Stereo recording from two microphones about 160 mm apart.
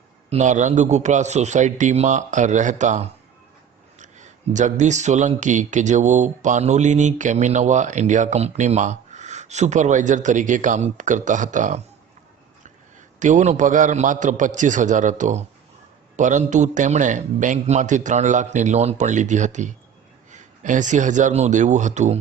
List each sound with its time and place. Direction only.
0.3 s speech: 45° right (ahead or behind)
13.1 s speech: 50° right (ahead or behind)